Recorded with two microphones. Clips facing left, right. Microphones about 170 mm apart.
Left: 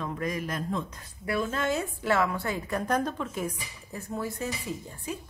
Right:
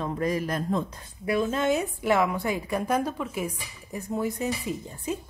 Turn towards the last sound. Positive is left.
turn(degrees=-20)  # may be behind; listen again after turning